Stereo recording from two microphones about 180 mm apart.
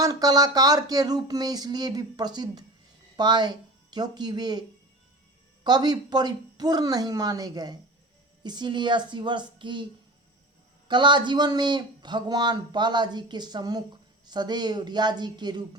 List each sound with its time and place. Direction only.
0.0 s speech: 20° right (ahead or behind)
5.6 s speech: 25° right (ahead or behind)
10.8 s speech: 25° right (ahead or behind)